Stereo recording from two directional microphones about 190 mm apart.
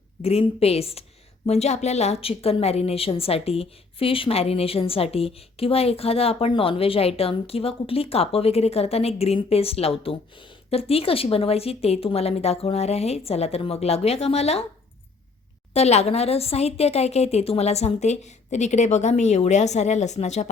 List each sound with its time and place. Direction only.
0.2 s a woman's voice: 30° left (ahead or behind)
15.7 s a woman's voice: 35° left (ahead or behind)